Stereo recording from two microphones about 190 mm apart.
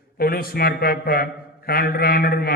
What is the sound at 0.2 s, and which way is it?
A man's voice, 50° left (ahead or behind).